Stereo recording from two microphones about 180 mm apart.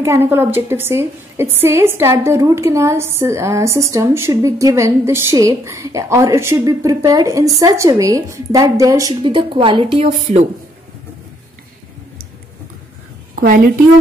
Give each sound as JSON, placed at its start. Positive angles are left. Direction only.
{"t": 0.0, "sound": "a woman's voice", "side_deg": -15}
{"t": 10.2, "sound": "speech", "side_deg": -40}
{"t": 13.4, "sound": "a woman's voice", "side_deg": -50}